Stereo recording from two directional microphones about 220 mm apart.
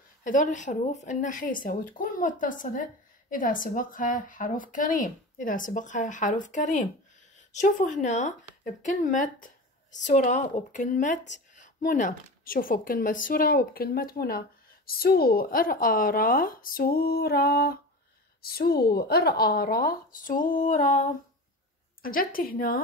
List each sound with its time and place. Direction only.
0.2 s a woman's voice: 35° left (ahead or behind)